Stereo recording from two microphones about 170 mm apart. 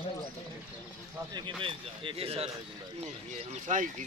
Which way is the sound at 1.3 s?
30° right (ahead or behind).